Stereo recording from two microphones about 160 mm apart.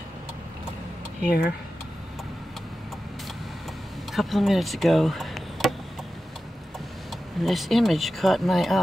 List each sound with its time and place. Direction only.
1.2 s speech: 70° left (ahead or behind)
4.1 s speech: centre (ahead or behind)
7.1 s speech: centre (ahead or behind)